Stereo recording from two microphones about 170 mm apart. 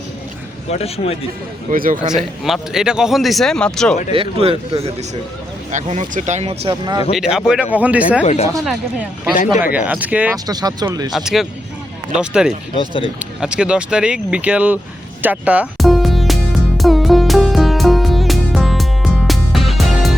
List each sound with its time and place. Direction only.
0.7 s a man's voice: 35° left (ahead or behind)
1.7 s a man's voice: 55° right (ahead or behind)
2.1 s speech: centre (ahead or behind)
4.1 s speech: 35° right (ahead or behind)
5.7 s speech: 45° right (ahead or behind); by 7.0 s 25° right (ahead or behind)
7.2 s speech: 5° right (ahead or behind)
8.2 s a man's voice: 40° left (ahead or behind)
8.6 s speech: 5° right (ahead or behind)
10.3 s speech: 20° right (ahead or behind)
11.1 s speech: centre (ahead or behind)
12.7 s a man's voice: 30° left (ahead or behind)
13.1 s speech: 5° right (ahead or behind)
15.2 s music: 10° right (ahead or behind)